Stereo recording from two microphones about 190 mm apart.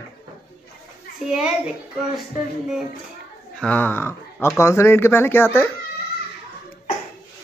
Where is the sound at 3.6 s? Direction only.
10° left (ahead or behind).